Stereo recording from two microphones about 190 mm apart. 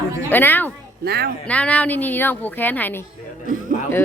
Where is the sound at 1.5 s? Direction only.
5° left (ahead or behind).